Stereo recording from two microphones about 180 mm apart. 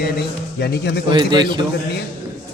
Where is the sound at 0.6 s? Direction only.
65° left (ahead or behind).